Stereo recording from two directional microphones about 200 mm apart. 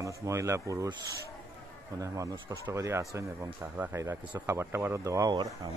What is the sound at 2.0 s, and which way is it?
Speech, 15° right (ahead or behind).